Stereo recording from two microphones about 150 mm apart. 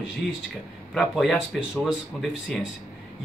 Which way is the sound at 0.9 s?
Centre (ahead or behind).